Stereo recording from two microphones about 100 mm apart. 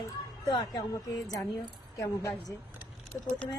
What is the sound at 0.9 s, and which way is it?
Speech, 35° left (ahead or behind).